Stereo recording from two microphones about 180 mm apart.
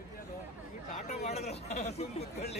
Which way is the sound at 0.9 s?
40° left (ahead or behind).